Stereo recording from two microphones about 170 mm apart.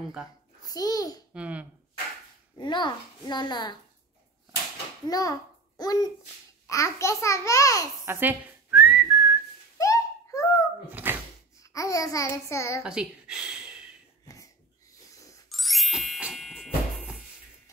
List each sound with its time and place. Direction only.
0.7 s a child's voice: 20° left (ahead or behind)
1.3 s speech: 5° right (ahead or behind)
2.5 s a child's voice: 25° left (ahead or behind)
5.0 s a child's voice: 20° left (ahead or behind)
8.0 s whistling: 10° right (ahead or behind)
9.8 s a sound: 20° left (ahead or behind)
10.9 s dog: 10° right (ahead or behind)
11.6 s a child's voice: 20° left (ahead or behind)
12.8 s speech: 5° right (ahead or behind)
14.2 s wheeze: 20° left (ahead or behind)
15.5 s ding: centre (ahead or behind)